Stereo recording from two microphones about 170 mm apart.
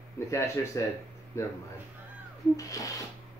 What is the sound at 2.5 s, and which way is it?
Speech, 20° left (ahead or behind).